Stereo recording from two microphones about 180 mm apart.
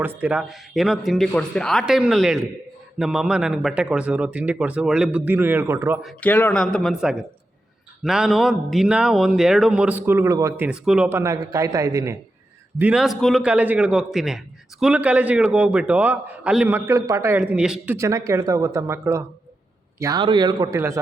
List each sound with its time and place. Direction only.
0.0 s a man's voice: 10° right (ahead or behind)
6.0 s a man's voice: 5° left (ahead or behind); by 10.7 s 15° right (ahead or behind)
10.7 s a man's voice: 5° right (ahead or behind)
12.8 s a man's voice: 5° right (ahead or behind)
17.3 s a man's voice: 5° right (ahead or behind)
17.9 s a man's voice: 15° right (ahead or behind)